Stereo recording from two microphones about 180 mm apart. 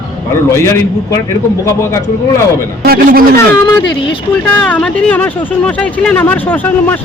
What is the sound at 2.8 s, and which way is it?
Speech, 55° right (ahead or behind).